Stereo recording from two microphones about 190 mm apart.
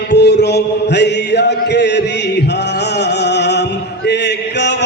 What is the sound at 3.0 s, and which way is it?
Chant, 65° left (ahead or behind).